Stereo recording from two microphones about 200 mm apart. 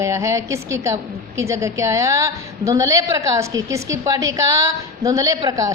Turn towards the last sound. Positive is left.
turn(degrees=-20)  # may be behind; listen again after turning